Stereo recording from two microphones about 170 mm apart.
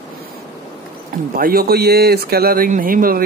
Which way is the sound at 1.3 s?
60° right (ahead or behind).